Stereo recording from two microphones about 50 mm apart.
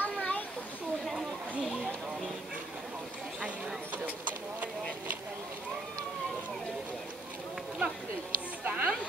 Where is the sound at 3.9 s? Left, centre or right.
Right.